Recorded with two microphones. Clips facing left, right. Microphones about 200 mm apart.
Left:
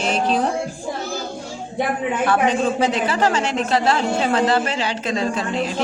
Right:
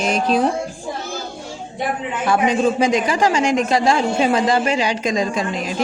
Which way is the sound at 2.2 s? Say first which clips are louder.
Right 2 dB; 10° right (ahead or behind).